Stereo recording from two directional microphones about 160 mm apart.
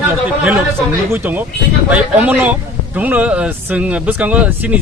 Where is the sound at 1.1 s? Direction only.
10° right (ahead or behind).